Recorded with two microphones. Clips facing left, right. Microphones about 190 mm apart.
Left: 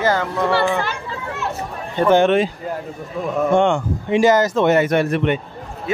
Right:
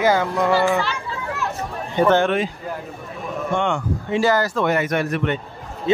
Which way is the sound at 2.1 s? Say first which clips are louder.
Left 4 dB; 20° left (ahead or behind).